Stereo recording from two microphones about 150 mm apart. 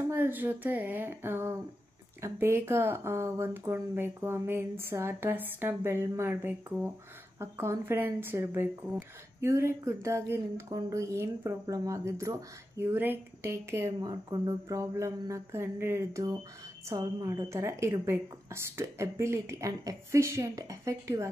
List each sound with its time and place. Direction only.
0.1 s speech: 15° right (ahead or behind)